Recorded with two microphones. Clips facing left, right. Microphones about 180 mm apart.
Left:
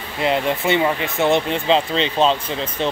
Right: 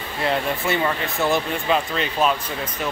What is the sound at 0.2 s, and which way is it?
Speech, 20° left (ahead or behind).